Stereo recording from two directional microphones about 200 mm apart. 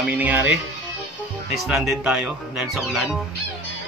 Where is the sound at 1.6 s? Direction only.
Centre (ahead or behind).